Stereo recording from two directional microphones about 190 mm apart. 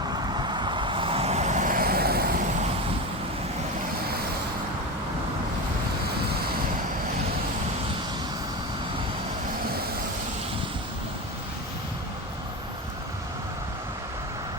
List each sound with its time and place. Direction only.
0.3 s vehicle: 25° right (ahead or behind); by 2.4 s 55° right (ahead or behind)